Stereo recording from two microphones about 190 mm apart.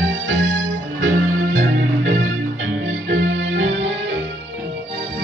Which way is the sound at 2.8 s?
75° right (ahead or behind).